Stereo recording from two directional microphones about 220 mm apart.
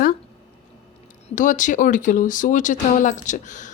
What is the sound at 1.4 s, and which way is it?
A woman's voice, 35° left (ahead or behind).